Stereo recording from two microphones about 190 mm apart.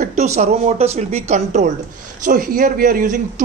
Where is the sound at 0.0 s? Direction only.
35° right (ahead or behind).